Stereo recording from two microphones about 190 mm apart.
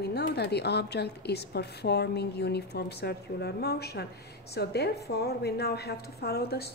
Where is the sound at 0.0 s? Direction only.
60° left (ahead or behind).